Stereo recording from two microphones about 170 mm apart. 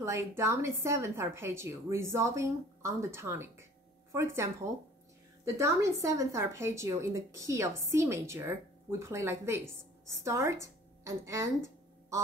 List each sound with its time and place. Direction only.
0.0 s a woman's voice: 15° right (ahead or behind)